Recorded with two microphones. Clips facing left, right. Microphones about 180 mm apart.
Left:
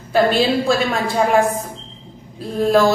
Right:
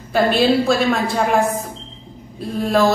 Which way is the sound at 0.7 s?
Centre (ahead or behind).